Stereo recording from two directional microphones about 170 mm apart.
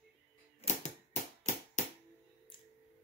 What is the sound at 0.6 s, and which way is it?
Typewriter, 40° left (ahead or behind).